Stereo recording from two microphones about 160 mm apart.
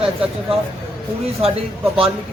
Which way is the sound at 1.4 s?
35° right (ahead or behind).